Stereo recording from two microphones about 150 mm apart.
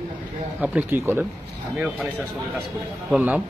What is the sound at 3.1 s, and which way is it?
Speech, 10° right (ahead or behind).